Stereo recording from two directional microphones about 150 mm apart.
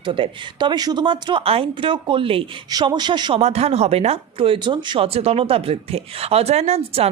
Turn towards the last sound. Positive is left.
turn(degrees=-45)  # may be behind; listen again after turning